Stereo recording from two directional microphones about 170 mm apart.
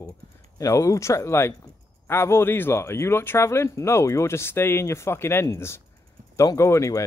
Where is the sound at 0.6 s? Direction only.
20° left (ahead or behind).